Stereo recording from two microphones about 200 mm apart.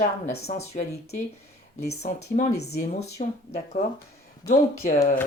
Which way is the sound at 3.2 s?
30° left (ahead or behind).